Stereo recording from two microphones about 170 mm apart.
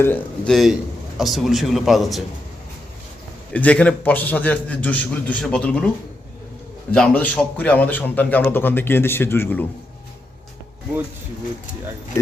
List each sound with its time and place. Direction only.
0.0 s speech: 10° left (ahead or behind)
0.5 s a man's voice: centre (ahead or behind)
3.5 s speech: 10° left (ahead or behind)
6.9 s speech: 5° left (ahead or behind)